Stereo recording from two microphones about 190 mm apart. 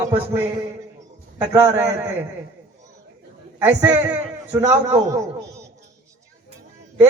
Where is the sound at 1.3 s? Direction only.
10° right (ahead or behind).